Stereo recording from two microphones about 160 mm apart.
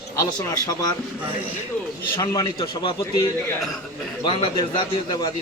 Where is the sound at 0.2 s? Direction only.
20° left (ahead or behind).